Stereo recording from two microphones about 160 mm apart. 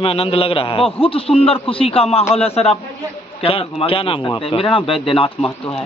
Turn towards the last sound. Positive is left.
turn(degrees=35)  # may be behind; listen again after turning